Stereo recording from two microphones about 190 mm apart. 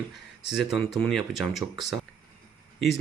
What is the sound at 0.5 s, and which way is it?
Speech, centre (ahead or behind).